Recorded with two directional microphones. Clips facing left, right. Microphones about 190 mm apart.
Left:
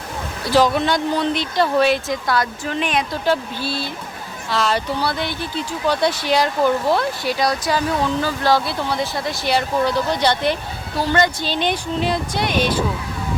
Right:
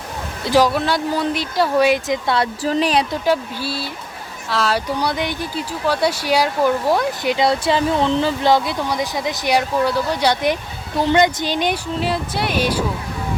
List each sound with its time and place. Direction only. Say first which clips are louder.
0.4 s speech: even; 15° right (ahead or behind)
2.2 s speech: right 2 dB; 25° right (ahead or behind)
3.2 s speech: right 1 dB; 10° right (ahead or behind)